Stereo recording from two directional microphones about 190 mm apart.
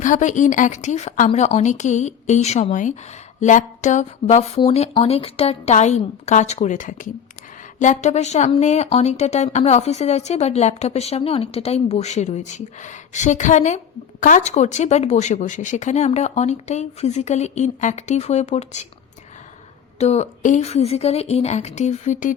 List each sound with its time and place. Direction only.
0.0 s speech: 40° left (ahead or behind)
20.0 s speech: 35° left (ahead or behind)